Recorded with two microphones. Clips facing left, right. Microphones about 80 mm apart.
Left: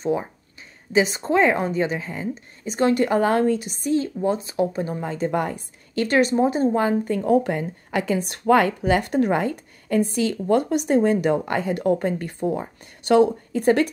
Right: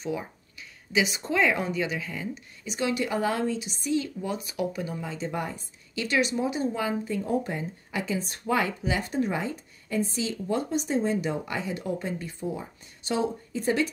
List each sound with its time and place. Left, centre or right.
0.0 s a woman's voice: left